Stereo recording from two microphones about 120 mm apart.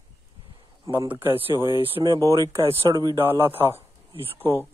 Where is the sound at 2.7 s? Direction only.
45° right (ahead or behind).